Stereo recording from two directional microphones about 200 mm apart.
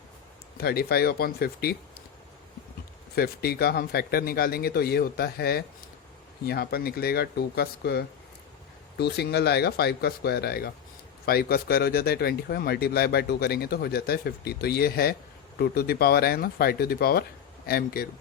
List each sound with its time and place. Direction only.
0.6 s speech: 50° left (ahead or behind)
3.2 s speech: 50° left (ahead or behind)